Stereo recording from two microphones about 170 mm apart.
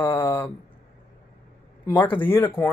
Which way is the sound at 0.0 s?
10° left (ahead or behind).